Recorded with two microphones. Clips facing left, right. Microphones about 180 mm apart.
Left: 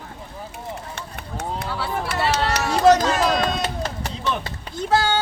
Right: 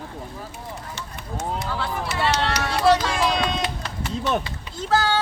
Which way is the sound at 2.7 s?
45° left (ahead or behind).